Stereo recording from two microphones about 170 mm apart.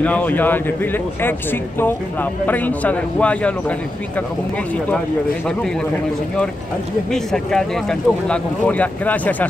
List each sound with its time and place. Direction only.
0.0 s speech: 10° left (ahead or behind)
7.1 s speech: 5° left (ahead or behind)